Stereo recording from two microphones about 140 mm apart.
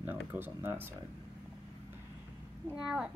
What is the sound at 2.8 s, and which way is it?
Speech, 5° right (ahead or behind).